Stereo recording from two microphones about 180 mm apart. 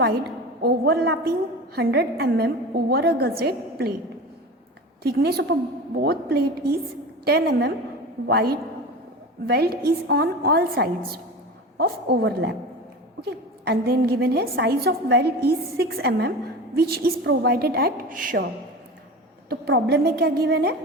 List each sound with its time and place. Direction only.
0.6 s a woman's voice: 60° right (ahead or behind)
5.0 s a woman's voice: 60° right (ahead or behind)
19.5 s a woman's voice: 60° right (ahead or behind)